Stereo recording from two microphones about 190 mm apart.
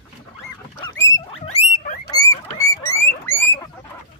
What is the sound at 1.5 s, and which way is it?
Rodents, 35° left (ahead or behind).